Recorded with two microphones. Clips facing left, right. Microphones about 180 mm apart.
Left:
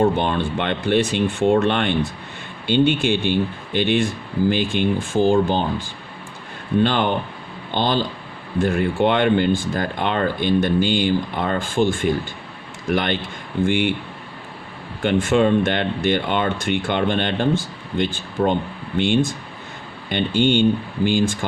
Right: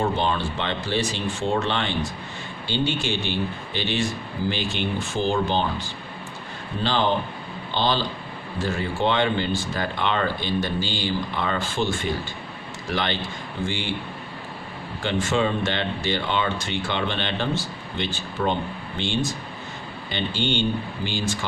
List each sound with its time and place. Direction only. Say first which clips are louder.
0.0 s speech: left 5 dB; 55° left (ahead or behind)
6.8 s speech: right 2 dB; 55° left (ahead or behind)
15.0 s speech: left 6 dB; 55° left (ahead or behind)